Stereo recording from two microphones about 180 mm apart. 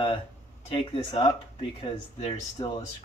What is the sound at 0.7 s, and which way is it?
Speech, 30° left (ahead or behind).